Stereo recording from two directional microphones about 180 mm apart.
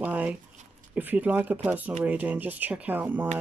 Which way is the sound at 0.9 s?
10° right (ahead or behind).